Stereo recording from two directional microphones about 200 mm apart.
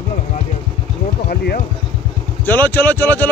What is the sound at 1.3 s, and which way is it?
Speech, 50° left (ahead or behind).